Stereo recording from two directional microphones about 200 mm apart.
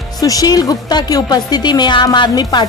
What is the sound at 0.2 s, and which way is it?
A woman's voice, 20° left (ahead or behind).